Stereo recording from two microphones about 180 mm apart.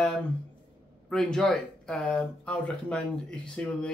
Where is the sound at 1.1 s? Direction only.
5° left (ahead or behind).